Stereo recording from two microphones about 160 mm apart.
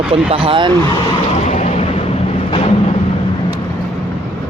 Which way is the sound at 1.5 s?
40° left (ahead or behind).